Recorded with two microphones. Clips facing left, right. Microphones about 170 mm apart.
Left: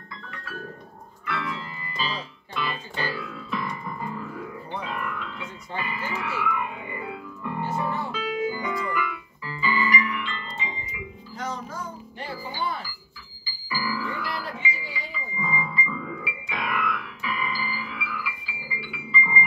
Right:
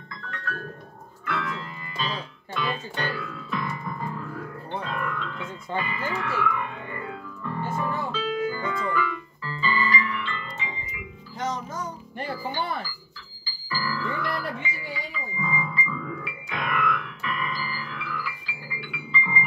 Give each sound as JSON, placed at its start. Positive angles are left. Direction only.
{"t": 1.2, "sound": "music", "side_deg": 0}
{"t": 11.3, "sound": "music", "side_deg": -20}
{"t": 12.2, "sound": "music", "side_deg": -60}
{"t": 13.5, "sound": "music", "side_deg": 10}